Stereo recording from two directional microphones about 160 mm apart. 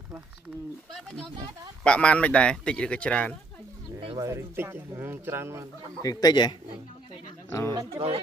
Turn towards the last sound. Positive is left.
turn(degrees=-20)  # may be behind; listen again after turning